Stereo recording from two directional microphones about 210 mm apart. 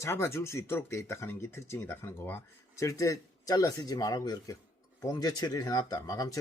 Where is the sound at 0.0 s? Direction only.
15° left (ahead or behind).